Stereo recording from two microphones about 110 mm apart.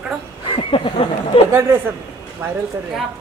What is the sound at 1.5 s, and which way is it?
Speech, 20° right (ahead or behind).